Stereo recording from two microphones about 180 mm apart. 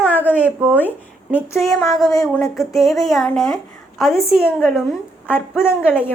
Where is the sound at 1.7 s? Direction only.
20° left (ahead or behind).